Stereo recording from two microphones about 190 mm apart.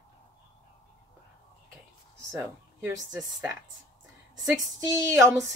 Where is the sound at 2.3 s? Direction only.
15° right (ahead or behind).